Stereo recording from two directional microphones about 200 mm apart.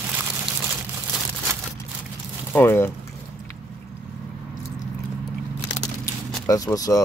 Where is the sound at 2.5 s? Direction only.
10° left (ahead or behind).